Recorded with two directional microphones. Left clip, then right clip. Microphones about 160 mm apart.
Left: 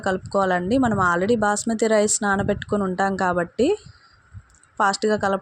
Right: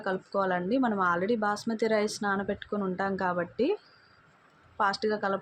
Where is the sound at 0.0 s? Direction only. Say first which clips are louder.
Left 8 dB; 50° left (ahead or behind).